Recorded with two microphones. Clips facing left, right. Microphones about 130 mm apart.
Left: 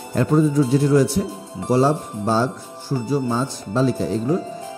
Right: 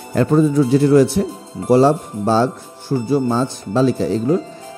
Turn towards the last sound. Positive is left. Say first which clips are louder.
# right 4 dB
turn(degrees=-85)